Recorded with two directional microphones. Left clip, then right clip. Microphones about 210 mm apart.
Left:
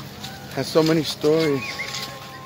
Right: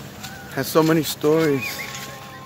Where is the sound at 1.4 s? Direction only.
25° right (ahead or behind).